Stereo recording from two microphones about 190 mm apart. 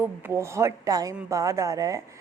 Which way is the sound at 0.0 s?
15° right (ahead or behind).